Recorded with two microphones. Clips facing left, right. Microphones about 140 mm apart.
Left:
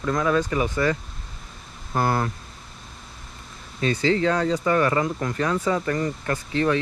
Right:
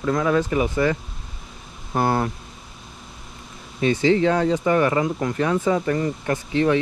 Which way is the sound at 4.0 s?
20° right (ahead or behind).